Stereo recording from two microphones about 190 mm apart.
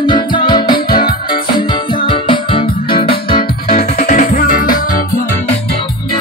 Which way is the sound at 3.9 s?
45° left (ahead or behind).